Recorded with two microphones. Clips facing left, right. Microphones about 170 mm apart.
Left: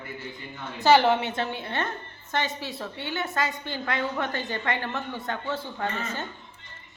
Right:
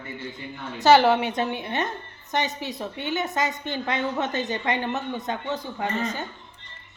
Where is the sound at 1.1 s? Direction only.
15° right (ahead or behind).